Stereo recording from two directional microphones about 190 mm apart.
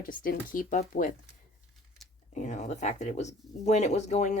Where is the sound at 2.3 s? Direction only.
40° left (ahead or behind).